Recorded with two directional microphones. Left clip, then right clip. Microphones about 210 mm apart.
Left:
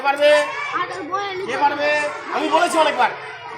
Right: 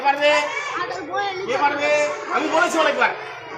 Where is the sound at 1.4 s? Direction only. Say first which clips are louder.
Left 2 dB; 20° left (ahead or behind).